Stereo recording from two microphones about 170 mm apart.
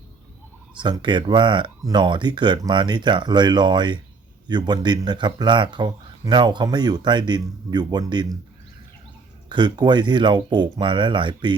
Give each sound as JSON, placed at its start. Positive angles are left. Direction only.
{"t": 0.8, "sound": "speech", "side_deg": -25}
{"t": 9.5, "sound": "speech", "side_deg": -25}